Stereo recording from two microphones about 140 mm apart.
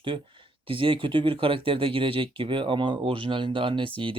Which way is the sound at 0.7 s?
40° right (ahead or behind).